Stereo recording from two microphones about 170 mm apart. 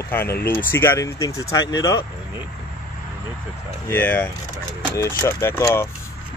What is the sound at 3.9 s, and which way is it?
Speech, 15° left (ahead or behind).